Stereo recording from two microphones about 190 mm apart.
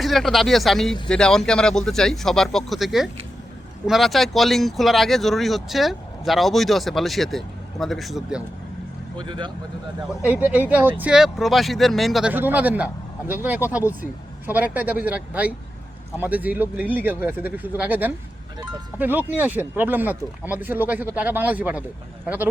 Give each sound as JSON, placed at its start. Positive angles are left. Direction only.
{"t": 0.0, "sound": "speech", "side_deg": 0}
{"t": 9.1, "sound": "speech", "side_deg": -25}
{"t": 10.2, "sound": "speech", "side_deg": -10}